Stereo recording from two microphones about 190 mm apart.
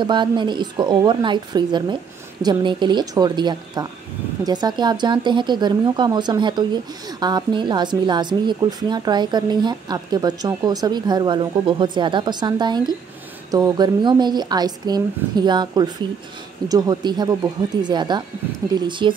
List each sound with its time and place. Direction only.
0.0 s speech: 25° right (ahead or behind)